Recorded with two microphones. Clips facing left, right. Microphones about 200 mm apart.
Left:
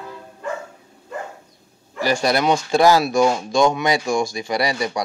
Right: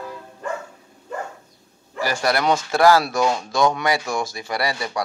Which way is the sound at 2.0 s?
20° left (ahead or behind).